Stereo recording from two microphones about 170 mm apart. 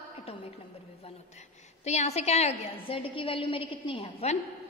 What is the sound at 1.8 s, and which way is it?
A woman's voice, 40° left (ahead or behind).